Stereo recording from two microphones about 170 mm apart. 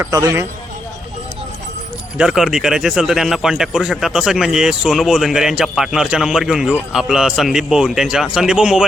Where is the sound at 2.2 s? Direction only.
5° right (ahead or behind).